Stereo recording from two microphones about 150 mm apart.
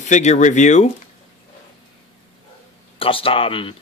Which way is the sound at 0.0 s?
50° left (ahead or behind).